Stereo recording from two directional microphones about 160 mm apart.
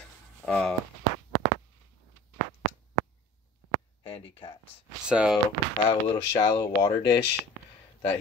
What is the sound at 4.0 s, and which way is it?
Speech, 35° left (ahead or behind).